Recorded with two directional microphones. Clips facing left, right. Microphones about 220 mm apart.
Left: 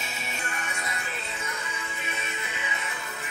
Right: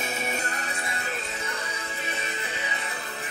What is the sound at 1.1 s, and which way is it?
Music, 45° right (ahead or behind).